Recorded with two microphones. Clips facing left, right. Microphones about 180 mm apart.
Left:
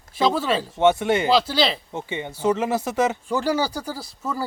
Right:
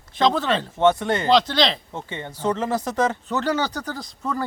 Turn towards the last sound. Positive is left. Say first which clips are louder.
# right 1 dB
turn(degrees=5)  # may be behind; listen again after turning